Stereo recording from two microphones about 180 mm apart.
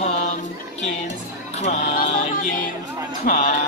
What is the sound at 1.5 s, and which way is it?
Music, 40° left (ahead or behind).